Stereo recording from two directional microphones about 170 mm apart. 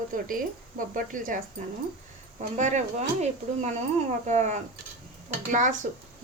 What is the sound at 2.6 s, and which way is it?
Speech, 45° right (ahead or behind).